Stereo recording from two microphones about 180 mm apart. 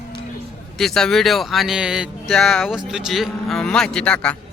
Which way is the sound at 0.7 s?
Centre (ahead or behind).